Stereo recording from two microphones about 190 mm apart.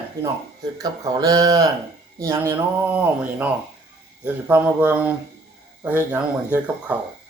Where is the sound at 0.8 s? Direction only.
20° right (ahead or behind).